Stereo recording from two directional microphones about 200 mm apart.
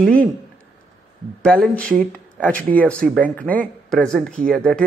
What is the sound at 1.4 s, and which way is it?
Speech, 5° left (ahead or behind).